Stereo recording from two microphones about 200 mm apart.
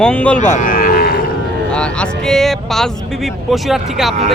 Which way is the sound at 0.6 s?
45° left (ahead or behind).